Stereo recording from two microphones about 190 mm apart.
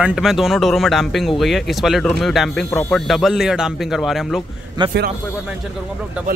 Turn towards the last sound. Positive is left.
turn(degrees=-25)  # may be behind; listen again after turning